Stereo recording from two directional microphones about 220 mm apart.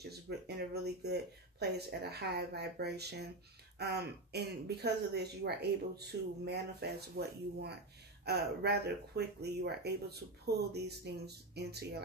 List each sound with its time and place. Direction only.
0.3 s speech: 50° right (ahead or behind)